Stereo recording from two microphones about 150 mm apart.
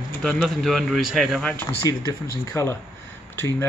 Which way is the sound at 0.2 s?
Centre (ahead or behind).